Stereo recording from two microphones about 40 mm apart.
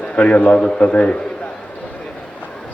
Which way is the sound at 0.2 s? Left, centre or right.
Left.